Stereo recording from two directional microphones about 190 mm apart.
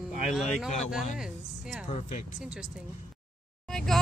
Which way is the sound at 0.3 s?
Centre (ahead or behind).